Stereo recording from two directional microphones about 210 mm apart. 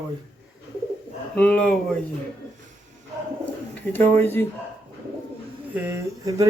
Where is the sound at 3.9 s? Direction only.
10° left (ahead or behind).